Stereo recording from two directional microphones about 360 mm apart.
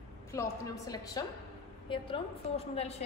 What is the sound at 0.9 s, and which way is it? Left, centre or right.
A woman's voice, centre.